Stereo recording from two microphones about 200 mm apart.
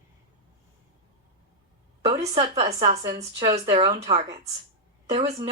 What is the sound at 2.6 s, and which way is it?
Speech, 30° right (ahead or behind).